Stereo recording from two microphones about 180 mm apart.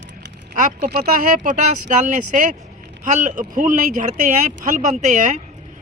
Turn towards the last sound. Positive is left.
turn(degrees=-40)  # may be behind; listen again after turning